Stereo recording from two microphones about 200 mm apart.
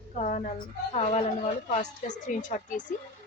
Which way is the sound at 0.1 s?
40° left (ahead or behind).